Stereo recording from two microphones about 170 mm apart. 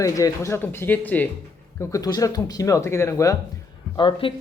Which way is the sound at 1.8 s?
20° left (ahead or behind).